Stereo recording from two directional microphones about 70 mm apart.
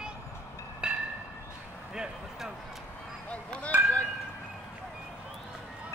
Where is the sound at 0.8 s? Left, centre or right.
Centre.